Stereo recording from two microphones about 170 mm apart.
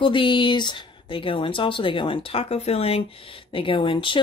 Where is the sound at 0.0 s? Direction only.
30° left (ahead or behind).